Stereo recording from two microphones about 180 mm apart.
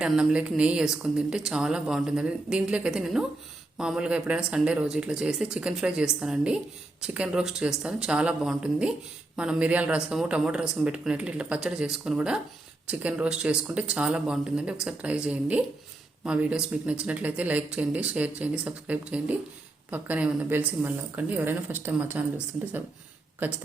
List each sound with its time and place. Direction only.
0.0 s speech: 5° right (ahead or behind)